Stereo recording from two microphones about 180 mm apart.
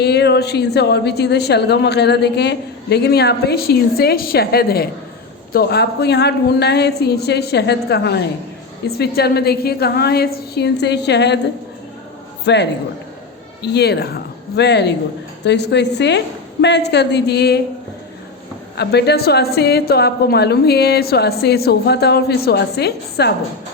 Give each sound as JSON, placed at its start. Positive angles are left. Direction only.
{"t": 0.0, "sound": "a woman's voice", "side_deg": 65}
{"t": 12.5, "sound": "speech", "side_deg": 70}
{"t": 18.8, "sound": "a woman's voice", "side_deg": 65}